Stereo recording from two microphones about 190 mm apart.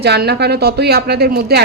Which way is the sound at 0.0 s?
60° right (ahead or behind).